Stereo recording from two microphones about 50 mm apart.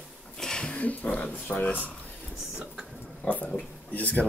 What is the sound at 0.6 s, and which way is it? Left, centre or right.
Speech, left.